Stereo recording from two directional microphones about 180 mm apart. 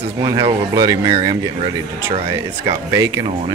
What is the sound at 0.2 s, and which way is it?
Speech, 25° right (ahead or behind).